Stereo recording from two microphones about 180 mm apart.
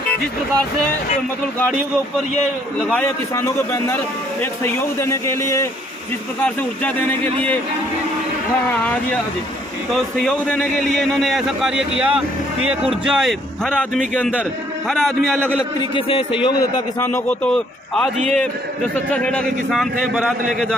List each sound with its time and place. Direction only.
2.9 s a man's voice: 15° left (ahead or behind)
9.9 s a man's voice: 5° left (ahead or behind)
15.8 s a man's voice: 30° left (ahead or behind)
17.3 s a man's voice: 5° left (ahead or behind)